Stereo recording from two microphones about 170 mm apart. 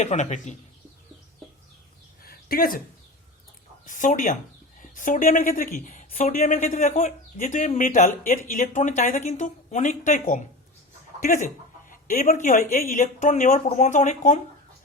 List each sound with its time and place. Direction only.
0.0 s speech: 45° left (ahead or behind)
2.2 s a sound: 60° left (ahead or behind)
3.8 s speech: 50° left (ahead or behind)